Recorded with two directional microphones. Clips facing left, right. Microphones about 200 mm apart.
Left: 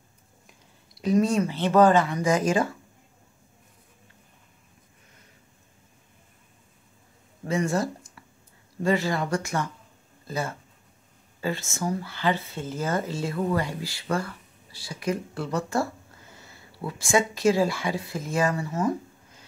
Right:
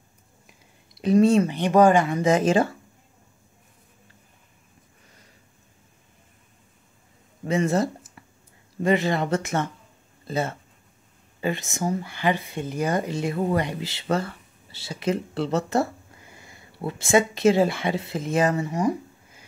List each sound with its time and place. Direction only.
0.9 s speech: 25° right (ahead or behind)
1.5 s speech: 15° right (ahead or behind)
2.1 s speech: 25° right (ahead or behind)
7.4 s speech: 20° right (ahead or behind)